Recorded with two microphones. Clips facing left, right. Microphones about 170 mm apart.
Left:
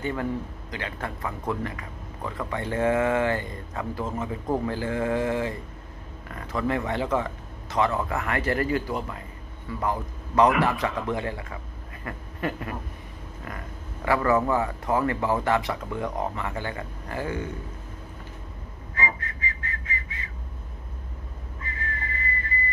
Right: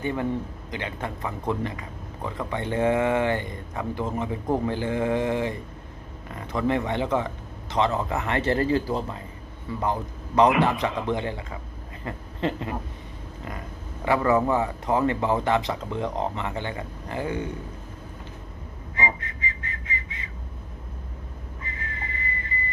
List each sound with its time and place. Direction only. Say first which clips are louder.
0.0 s a man's voice: right 2 dB; 20° right (ahead or behind)
18.9 s whistling: right 2 dB; 20° right (ahead or behind)
21.6 s whistling: left 3 dB; 20° right (ahead or behind)